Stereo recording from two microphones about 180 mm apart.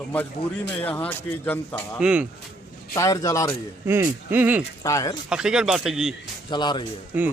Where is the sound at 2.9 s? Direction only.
15° left (ahead or behind).